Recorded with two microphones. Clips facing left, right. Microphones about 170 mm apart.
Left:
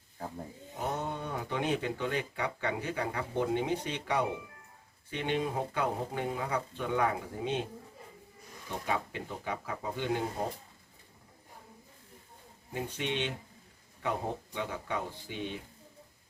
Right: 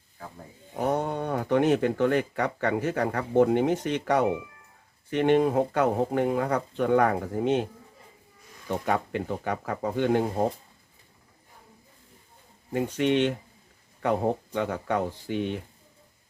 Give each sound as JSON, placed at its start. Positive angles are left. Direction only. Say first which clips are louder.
{"t": 0.8, "sound": "speech", "louder": "right 8 dB", "side_deg": -50}
{"t": 8.8, "sound": "speech", "louder": "right 6 dB", "side_deg": -55}
{"t": 12.7, "sound": "speech", "louder": "right 11 dB", "side_deg": -55}